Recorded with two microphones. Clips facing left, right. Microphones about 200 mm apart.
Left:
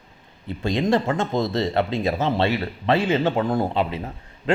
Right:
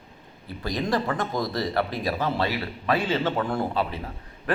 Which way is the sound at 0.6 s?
25° left (ahead or behind).